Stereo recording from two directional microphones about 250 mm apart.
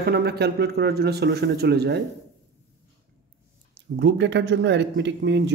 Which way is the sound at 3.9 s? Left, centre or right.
Right.